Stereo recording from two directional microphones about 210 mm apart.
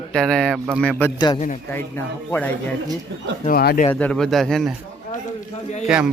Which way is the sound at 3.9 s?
5° left (ahead or behind).